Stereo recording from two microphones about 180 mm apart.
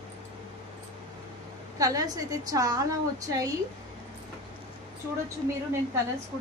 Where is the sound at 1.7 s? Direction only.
20° right (ahead or behind).